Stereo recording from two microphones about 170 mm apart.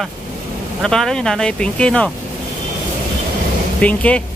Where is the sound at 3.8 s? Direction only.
10° left (ahead or behind).